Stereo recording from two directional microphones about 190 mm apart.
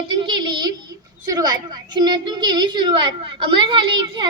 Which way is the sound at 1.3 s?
20° right (ahead or behind).